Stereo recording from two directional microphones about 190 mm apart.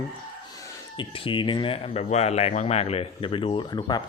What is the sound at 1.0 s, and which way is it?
Speech, 25° left (ahead or behind).